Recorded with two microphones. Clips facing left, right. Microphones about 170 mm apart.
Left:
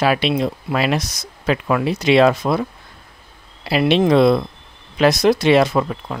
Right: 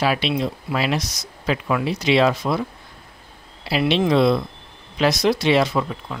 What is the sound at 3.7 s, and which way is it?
Speech, 50° left (ahead or behind).